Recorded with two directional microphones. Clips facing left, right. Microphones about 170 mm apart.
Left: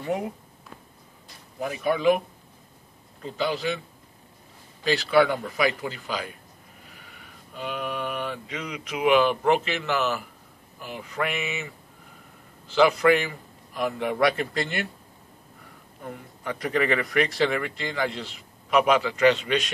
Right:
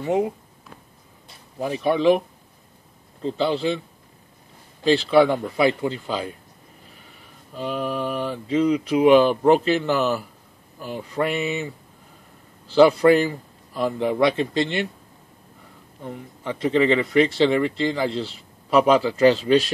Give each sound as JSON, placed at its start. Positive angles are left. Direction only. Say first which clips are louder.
{"t": 0.0, "sound": "speech", "louder": "right 6 dB", "side_deg": -20}
{"t": 1.7, "sound": "speech", "louder": "right 4 dB", "side_deg": -30}
{"t": 3.2, "sound": "speech", "louder": "right 5 dB", "side_deg": -30}
{"t": 4.8, "sound": "speech", "louder": "right 4 dB", "side_deg": -25}
{"t": 7.5, "sound": "speech", "louder": "right 5 dB", "side_deg": -35}
{"t": 16.0, "sound": "speech", "louder": "right 3 dB", "side_deg": -25}